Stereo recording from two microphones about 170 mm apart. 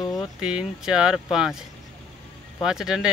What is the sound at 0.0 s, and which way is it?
Speech, centre (ahead or behind).